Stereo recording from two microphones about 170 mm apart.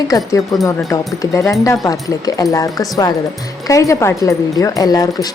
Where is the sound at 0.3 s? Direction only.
20° left (ahead or behind).